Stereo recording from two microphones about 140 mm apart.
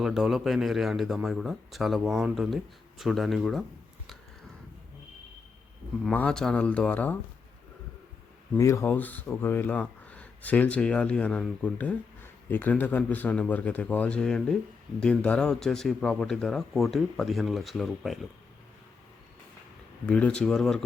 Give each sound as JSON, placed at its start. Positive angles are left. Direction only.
{"t": 0.0, "sound": "speech", "side_deg": -5}
{"t": 6.1, "sound": "speech", "side_deg": 5}
{"t": 8.5, "sound": "speech", "side_deg": 20}
{"t": 20.1, "sound": "speech", "side_deg": 10}